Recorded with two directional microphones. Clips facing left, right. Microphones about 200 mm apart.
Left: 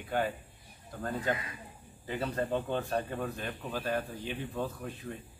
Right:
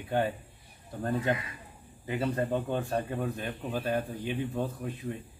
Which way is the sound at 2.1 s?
10° right (ahead or behind).